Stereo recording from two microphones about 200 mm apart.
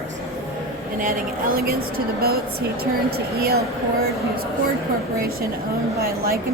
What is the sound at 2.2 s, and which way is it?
Speech, 50° right (ahead or behind).